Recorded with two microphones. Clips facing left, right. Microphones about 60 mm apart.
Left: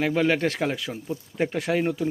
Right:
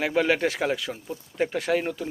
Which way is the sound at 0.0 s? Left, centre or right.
Centre.